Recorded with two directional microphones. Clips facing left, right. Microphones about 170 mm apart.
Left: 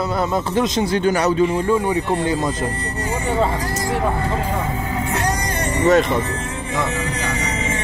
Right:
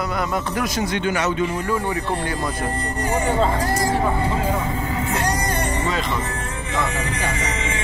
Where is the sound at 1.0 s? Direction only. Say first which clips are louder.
Left 5 dB; 35° left (ahead or behind).